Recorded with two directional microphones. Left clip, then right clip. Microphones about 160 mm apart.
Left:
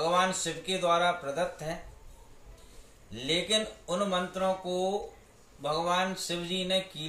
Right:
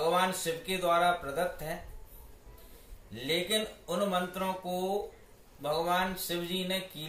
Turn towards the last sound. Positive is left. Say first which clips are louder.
# left 4 dB
turn(degrees=15)  # may be behind; listen again after turning